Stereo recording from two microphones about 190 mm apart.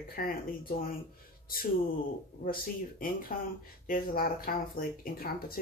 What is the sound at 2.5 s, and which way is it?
Speech, 50° left (ahead or behind).